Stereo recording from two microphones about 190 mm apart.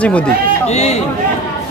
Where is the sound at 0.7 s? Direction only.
35° left (ahead or behind).